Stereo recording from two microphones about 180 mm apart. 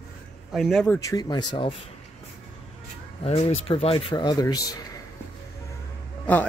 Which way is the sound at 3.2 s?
35° left (ahead or behind).